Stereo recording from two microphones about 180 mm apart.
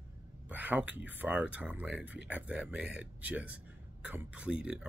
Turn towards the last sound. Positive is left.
turn(degrees=-5)  # may be behind; listen again after turning